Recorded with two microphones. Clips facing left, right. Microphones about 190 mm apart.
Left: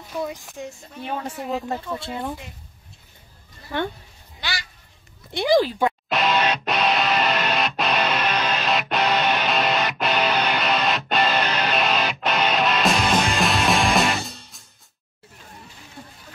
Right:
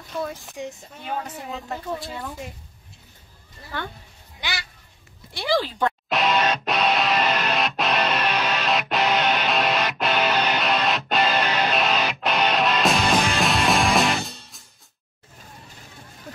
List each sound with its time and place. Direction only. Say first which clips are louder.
0.1 s speech: left 1 dB; 15° left (ahead or behind)
1.2 s speech: left 6 dB; 30° left (ahead or behind)
3.7 s speech: left 7 dB; 20° left (ahead or behind)
4.4 s honk: left 1 dB; 15° right (ahead or behind)
5.3 s speech: left 5 dB; 15° left (ahead or behind)
6.0 s music: right 3 dB; centre (ahead or behind)